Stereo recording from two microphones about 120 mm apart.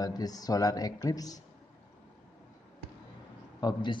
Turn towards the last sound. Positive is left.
turn(degrees=35)  # may be behind; listen again after turning